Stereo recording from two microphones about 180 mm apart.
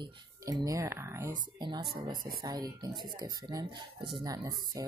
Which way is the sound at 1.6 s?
25° right (ahead or behind).